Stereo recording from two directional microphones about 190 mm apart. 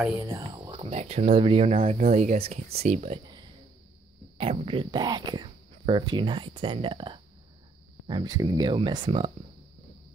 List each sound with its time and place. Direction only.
0.4 s speech: 25° right (ahead or behind)
1.8 s speech: 40° right (ahead or behind)
4.4 s speech: 30° right (ahead or behind)